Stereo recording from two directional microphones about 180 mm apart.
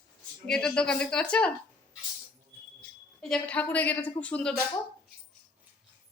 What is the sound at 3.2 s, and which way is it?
A woman's voice, 5° left (ahead or behind).